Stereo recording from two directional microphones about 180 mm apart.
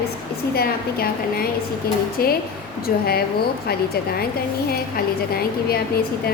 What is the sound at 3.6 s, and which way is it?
Speech, 60° left (ahead or behind).